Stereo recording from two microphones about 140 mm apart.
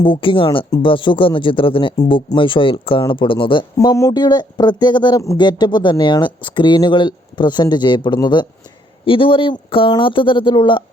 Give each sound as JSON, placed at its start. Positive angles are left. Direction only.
{"t": 0.0, "sound": "speech", "side_deg": 35}
{"t": 3.8, "sound": "speech", "side_deg": 20}